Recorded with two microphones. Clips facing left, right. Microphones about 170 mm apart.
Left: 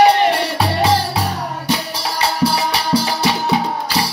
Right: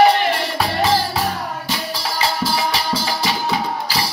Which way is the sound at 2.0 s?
70° left (ahead or behind).